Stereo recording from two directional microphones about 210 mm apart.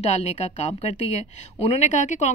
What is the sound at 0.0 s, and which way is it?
A woman's voice, 30° left (ahead or behind).